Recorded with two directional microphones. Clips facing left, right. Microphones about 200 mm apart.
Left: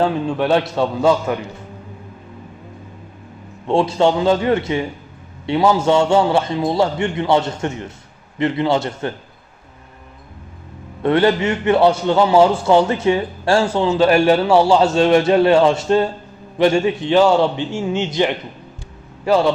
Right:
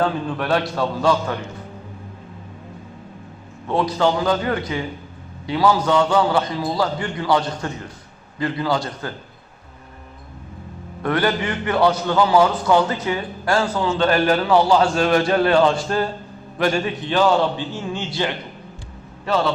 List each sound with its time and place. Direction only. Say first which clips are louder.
0.0 s a man's voice: left 4 dB; 25° left (ahead or behind)
3.7 s a man's voice: left 4 dB; 25° left (ahead or behind)
11.0 s a man's voice: left 6 dB; 25° left (ahead or behind)